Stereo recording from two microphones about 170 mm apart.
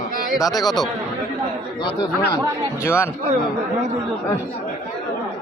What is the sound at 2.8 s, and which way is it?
Speech, 15° left (ahead or behind).